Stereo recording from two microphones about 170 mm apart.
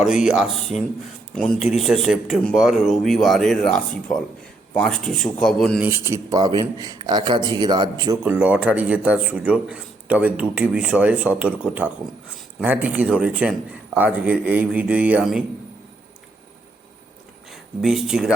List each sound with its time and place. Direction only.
0.0 s speech: 5° right (ahead or behind)
5.8 s a man's voice: 20° right (ahead or behind)
8.2 s a man's voice: 10° right (ahead or behind)
17.5 s speech: centre (ahead or behind)